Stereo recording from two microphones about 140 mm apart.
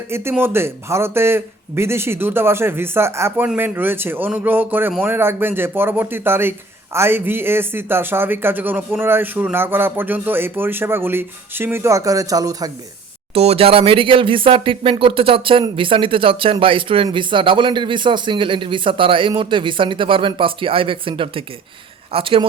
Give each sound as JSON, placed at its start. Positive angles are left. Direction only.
{"t": 0.1, "sound": "a man's voice", "side_deg": -15}
{"t": 13.3, "sound": "speech", "side_deg": -45}